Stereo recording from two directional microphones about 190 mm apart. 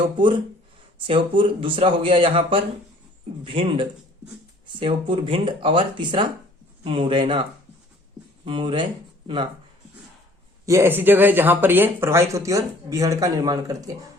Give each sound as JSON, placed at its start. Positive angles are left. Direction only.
{"t": 0.9, "sound": "speech", "side_deg": -25}
{"t": 8.4, "sound": "speech", "side_deg": -25}
{"t": 10.7, "sound": "speech", "side_deg": -15}